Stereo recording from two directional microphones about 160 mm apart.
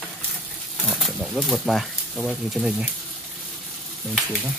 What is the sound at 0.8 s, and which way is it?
Speech, centre (ahead or behind).